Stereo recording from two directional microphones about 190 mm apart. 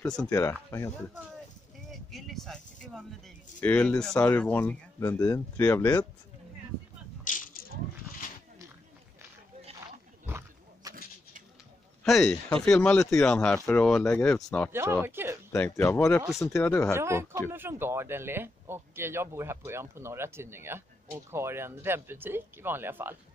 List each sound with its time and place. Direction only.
0.0 s speech: 5° left (ahead or behind)
1.9 s speech: centre (ahead or behind)
7.2 s coin: 45° left (ahead or behind)
10.2 s a sound: 15° right (ahead or behind)
12.0 s a man's voice: 5° left (ahead or behind)
14.7 s speech: 15° right (ahead or behind)
15.5 s speech: 15° left (ahead or behind)
16.9 s speech: 15° right (ahead or behind)